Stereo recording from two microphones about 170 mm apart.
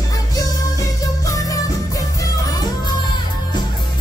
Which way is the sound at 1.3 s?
20° left (ahead or behind).